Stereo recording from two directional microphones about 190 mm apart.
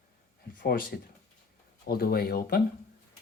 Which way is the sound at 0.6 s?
50° left (ahead or behind).